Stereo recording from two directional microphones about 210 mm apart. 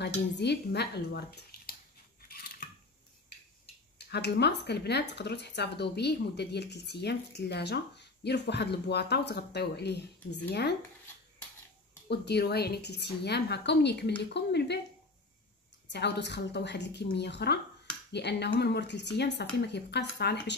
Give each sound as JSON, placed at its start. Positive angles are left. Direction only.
{"t": 0.0, "sound": "speech", "side_deg": 55}
{"t": 2.2, "sound": "a sound", "side_deg": 45}
{"t": 4.1, "sound": "speech", "side_deg": 50}
{"t": 12.1, "sound": "speech", "side_deg": 50}
{"t": 15.9, "sound": "a woman's voice", "side_deg": 55}